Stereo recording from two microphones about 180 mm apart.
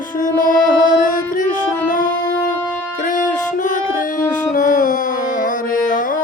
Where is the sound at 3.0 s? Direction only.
45° left (ahead or behind).